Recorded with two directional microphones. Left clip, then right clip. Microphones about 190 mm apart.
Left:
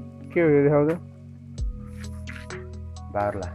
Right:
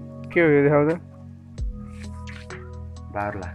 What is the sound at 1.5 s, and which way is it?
Music, centre (ahead or behind).